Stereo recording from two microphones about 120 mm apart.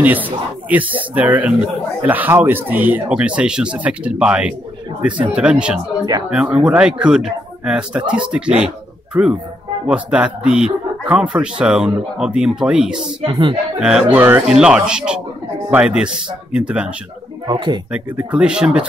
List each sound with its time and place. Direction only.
0.0 s speech: 15° right (ahead or behind)
13.2 s speech: 45° right (ahead or behind)
13.7 s speech: 5° right (ahead or behind)
17.5 s speech: 40° right (ahead or behind)
17.9 s speech: 10° right (ahead or behind)